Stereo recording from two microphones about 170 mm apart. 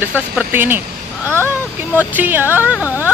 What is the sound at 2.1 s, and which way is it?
Speech, 10° right (ahead or behind).